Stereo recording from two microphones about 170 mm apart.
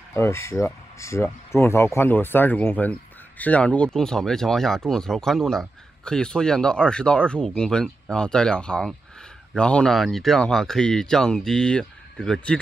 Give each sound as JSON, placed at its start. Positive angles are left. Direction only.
{"t": 0.1, "sound": "speech", "side_deg": 15}